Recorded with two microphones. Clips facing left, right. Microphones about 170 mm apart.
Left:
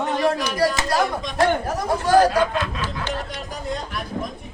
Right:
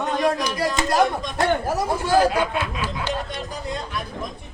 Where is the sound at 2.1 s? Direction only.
25° right (ahead or behind).